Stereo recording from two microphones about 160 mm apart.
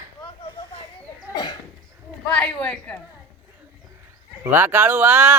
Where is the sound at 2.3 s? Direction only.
5° left (ahead or behind).